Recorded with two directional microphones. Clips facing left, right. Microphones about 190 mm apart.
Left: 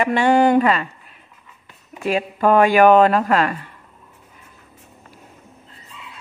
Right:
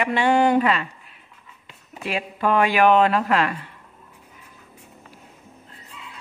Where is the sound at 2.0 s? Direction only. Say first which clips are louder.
Left 6 dB; 45° left (ahead or behind).